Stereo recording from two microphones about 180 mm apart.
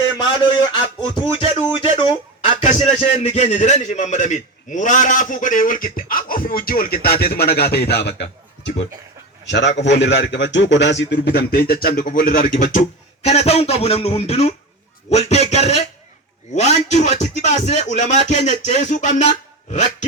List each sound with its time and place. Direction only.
0.2 s a sound: 25° left (ahead or behind)
1.2 s a man's voice: 30° left (ahead or behind); by 8.7 s 65° left (ahead or behind)
9.4 s a man's voice: 75° left (ahead or behind); by 12.7 s 50° left (ahead or behind)
13.2 s speech: 35° left (ahead or behind)